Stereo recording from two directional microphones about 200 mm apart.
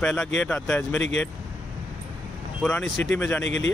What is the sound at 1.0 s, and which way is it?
Speech, 65° left (ahead or behind).